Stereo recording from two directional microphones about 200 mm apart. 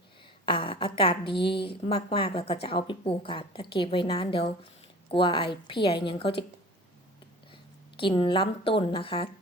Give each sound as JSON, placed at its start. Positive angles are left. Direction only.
{"t": 0.4, "sound": "a woman's voice", "side_deg": 25}
{"t": 7.9, "sound": "a woman's voice", "side_deg": 25}